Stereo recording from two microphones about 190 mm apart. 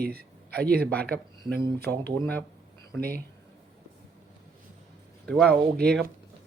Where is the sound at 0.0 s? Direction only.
55° right (ahead or behind).